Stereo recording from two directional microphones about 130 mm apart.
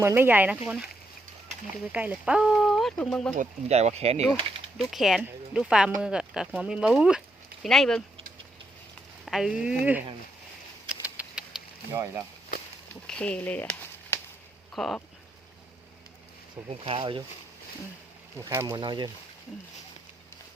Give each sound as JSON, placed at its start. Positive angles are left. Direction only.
{"t": 0.0, "sound": "speech", "side_deg": -20}
{"t": 1.9, "sound": "speech", "side_deg": -10}
{"t": 3.3, "sound": "speech", "side_deg": -60}
{"t": 4.8, "sound": "speech", "side_deg": 0}
{"t": 9.2, "sound": "speech", "side_deg": -5}
{"t": 10.8, "sound": "a sound", "side_deg": -10}
{"t": 11.9, "sound": "speech", "side_deg": -20}
{"t": 13.1, "sound": "a sound", "side_deg": 10}
{"t": 14.8, "sound": "speech", "side_deg": 0}
{"t": 16.8, "sound": "speech", "side_deg": -45}
{"t": 18.3, "sound": "speech", "side_deg": -20}